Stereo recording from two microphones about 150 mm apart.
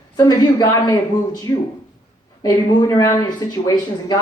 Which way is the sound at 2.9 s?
20° left (ahead or behind).